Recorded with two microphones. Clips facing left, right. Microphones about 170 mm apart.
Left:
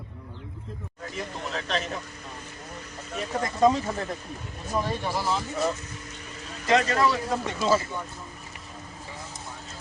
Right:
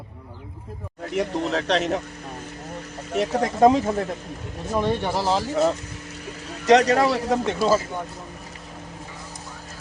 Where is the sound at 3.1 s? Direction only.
70° right (ahead or behind).